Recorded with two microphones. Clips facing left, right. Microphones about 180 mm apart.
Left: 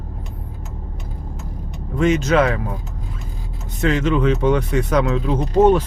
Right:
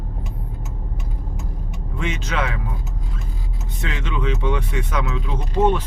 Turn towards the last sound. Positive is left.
turn(degrees=40)  # may be behind; listen again after turning